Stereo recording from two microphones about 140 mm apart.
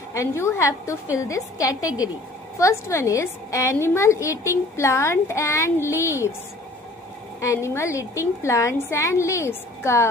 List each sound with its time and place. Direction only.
0.1 s a woman's voice: 20° left (ahead or behind)
7.3 s a woman's voice: 20° left (ahead or behind)